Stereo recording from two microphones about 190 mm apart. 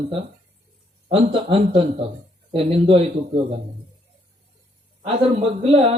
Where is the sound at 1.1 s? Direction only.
30° right (ahead or behind).